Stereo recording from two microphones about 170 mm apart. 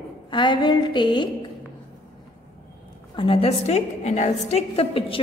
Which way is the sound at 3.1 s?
30° left (ahead or behind).